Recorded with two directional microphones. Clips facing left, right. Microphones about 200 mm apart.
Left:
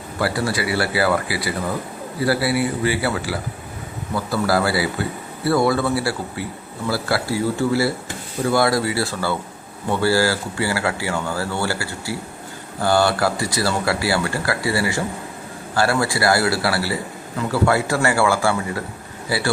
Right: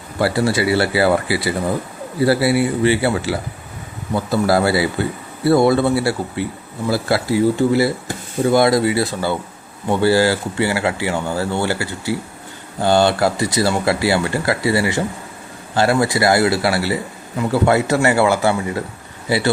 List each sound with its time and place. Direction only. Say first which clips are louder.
0.2 s speech: right 5 dB; 25° right (ahead or behind)